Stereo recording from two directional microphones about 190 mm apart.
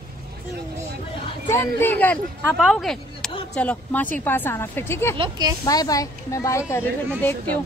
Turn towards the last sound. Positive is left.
turn(degrees=10)  # may be behind; listen again after turning